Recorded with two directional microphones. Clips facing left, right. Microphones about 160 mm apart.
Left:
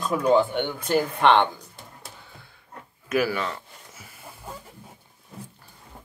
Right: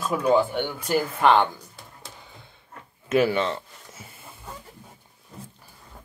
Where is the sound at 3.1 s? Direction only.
25° right (ahead or behind).